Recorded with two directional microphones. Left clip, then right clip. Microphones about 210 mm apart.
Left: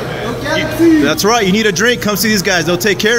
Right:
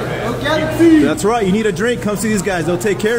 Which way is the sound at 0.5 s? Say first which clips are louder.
Left 1 dB; centre (ahead or behind).